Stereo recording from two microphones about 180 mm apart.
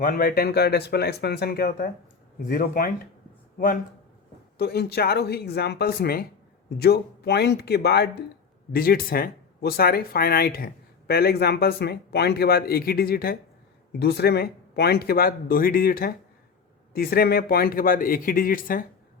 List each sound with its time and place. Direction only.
0.0 s speech: 55° left (ahead or behind)
4.5 s speech: 65° left (ahead or behind)